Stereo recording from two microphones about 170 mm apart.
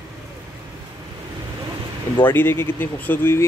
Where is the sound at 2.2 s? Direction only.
10° left (ahead or behind).